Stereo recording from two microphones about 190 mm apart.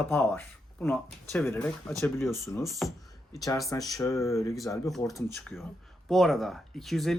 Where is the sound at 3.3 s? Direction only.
20° left (ahead or behind).